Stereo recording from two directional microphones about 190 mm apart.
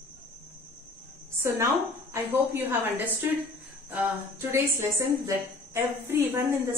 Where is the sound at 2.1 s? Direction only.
10° right (ahead or behind).